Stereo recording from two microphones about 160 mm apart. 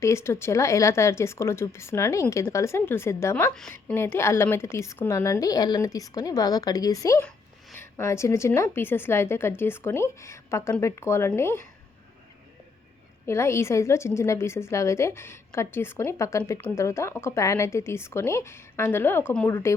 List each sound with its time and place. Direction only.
0.0 s a woman's voice: 15° left (ahead or behind)
13.2 s a woman's voice: 15° left (ahead or behind)